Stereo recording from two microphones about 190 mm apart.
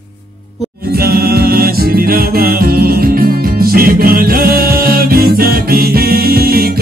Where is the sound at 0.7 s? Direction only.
55° right (ahead or behind).